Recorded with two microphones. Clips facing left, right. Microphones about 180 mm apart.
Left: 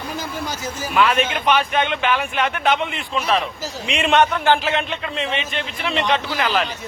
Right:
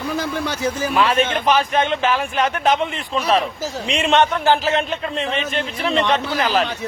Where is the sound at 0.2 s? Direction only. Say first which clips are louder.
Right 5 dB; 65° right (ahead or behind).